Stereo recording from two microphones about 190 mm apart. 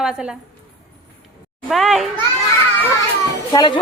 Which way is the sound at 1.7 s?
Centre (ahead or behind).